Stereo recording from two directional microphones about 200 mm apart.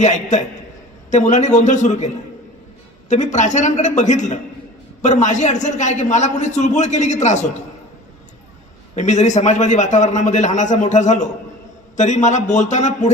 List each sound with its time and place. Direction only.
0.0 s a man's voice: 35° left (ahead or behind)
9.0 s a man's voice: 35° left (ahead or behind)